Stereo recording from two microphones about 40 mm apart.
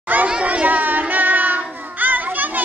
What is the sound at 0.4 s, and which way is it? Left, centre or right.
Child singing, right.